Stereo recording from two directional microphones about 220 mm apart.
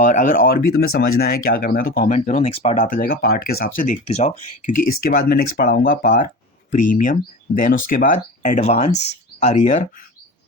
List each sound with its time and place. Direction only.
0.0 s speech: 35° left (ahead or behind)